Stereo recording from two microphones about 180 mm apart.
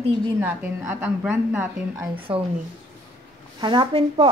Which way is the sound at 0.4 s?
10° right (ahead or behind).